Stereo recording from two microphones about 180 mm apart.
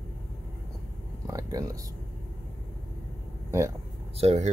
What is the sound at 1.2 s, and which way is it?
Speech, 20° right (ahead or behind).